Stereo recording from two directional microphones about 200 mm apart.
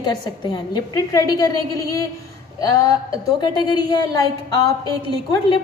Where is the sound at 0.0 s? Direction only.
20° left (ahead or behind).